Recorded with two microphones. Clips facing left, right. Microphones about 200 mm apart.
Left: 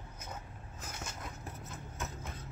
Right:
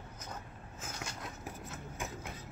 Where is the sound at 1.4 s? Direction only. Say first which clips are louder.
Right 2 dB; 10° right (ahead or behind).